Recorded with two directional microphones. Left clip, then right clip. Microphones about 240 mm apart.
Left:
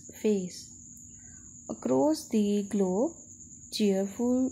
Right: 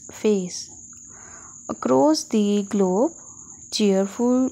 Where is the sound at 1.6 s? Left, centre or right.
Centre.